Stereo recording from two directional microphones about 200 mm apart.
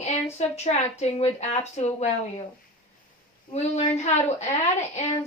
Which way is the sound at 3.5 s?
35° left (ahead or behind).